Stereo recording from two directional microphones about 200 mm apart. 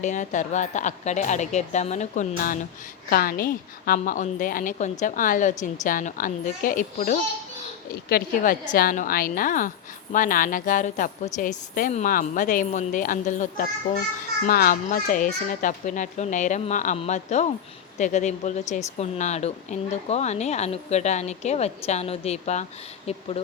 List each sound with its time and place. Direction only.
0.0 s a woman's voice: 40° left (ahead or behind)
8.7 s a woman's voice: 45° left (ahead or behind)